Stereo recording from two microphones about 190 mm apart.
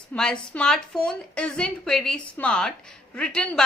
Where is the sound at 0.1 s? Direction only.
5° left (ahead or behind).